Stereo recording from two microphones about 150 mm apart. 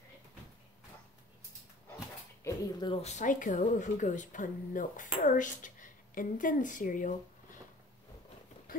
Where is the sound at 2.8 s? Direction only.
35° left (ahead or behind).